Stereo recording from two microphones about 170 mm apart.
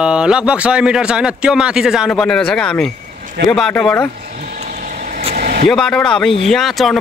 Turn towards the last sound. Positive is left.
turn(degrees=0)  # may be behind; listen again after turning